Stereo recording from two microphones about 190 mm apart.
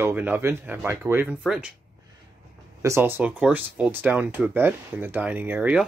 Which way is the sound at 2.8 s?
15° right (ahead or behind).